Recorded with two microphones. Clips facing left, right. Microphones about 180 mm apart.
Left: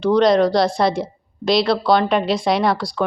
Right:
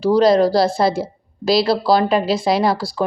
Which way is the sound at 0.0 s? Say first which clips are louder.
Right 1 dB; 5° right (ahead or behind).